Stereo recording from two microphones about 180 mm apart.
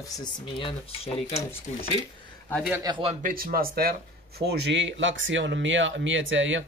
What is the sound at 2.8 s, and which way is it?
Speech, 30° right (ahead or behind).